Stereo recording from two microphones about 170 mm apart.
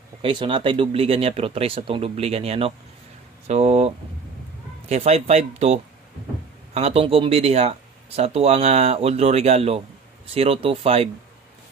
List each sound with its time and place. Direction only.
0.2 s speech: 30° right (ahead or behind)